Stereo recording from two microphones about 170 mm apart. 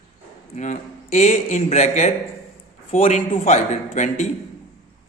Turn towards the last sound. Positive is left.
turn(degrees=40)  # may be behind; listen again after turning